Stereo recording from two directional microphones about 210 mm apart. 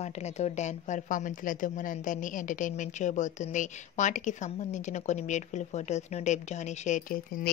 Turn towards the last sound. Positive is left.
turn(degrees=40)  # may be behind; listen again after turning